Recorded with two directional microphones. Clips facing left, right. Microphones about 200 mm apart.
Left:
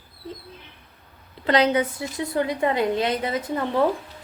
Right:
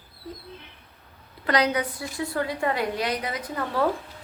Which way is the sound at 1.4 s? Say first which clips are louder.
Left 4 dB; 25° left (ahead or behind).